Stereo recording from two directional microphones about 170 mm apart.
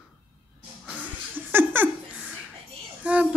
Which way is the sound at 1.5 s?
10° right (ahead or behind).